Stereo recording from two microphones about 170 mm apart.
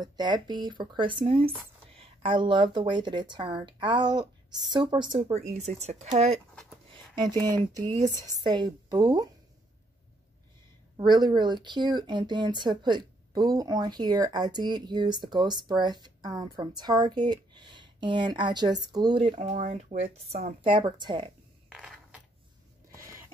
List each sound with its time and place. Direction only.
0.0 s speech: 25° right (ahead or behind)
5.5 s speech: 40° right (ahead or behind)
6.5 s a sound: 5° left (ahead or behind)
7.4 s speech: 20° right (ahead or behind)
11.0 s speech: 25° right (ahead or behind)
19.5 s speech: 50° right (ahead or behind); by 21.3 s 25° right (ahead or behind)
21.7 s coin: 5° right (ahead or behind)